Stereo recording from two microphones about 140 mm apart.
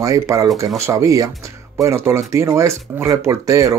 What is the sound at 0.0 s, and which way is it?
Speech, 25° right (ahead or behind).